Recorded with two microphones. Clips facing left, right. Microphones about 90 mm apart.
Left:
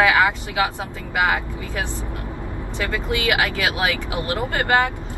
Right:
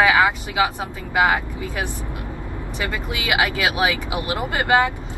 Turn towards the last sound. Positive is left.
turn(degrees=-15)  # may be behind; listen again after turning